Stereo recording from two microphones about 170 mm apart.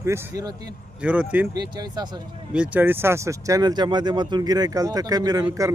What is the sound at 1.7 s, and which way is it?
Speech, 25° right (ahead or behind).